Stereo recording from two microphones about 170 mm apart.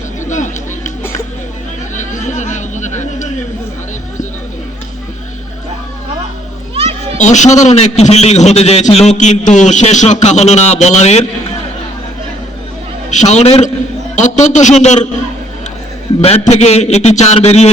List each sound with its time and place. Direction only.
0.3 s a sound: 45° left (ahead or behind)
2.0 s a sound: 45° left (ahead or behind)
6.7 s children playing: 35° right (ahead or behind)
7.2 s a man's voice: 45° left (ahead or behind)
13.1 s a man's voice: 45° left (ahead or behind)
16.2 s a man's voice: 40° left (ahead or behind)